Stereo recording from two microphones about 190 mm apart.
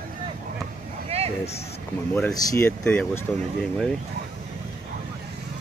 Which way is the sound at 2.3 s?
20° left (ahead or behind).